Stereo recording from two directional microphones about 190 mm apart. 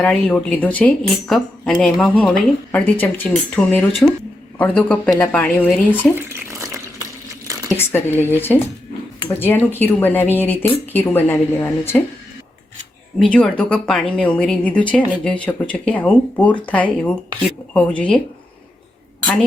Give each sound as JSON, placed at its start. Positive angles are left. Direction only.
{"t": 0.0, "sound": "speech", "side_deg": 5}
{"t": 6.0, "sound": "water", "side_deg": -10}
{"t": 7.8, "sound": "speech", "side_deg": 10}
{"t": 13.1, "sound": "speech", "side_deg": 5}
{"t": 19.2, "sound": "a woman's voice", "side_deg": 5}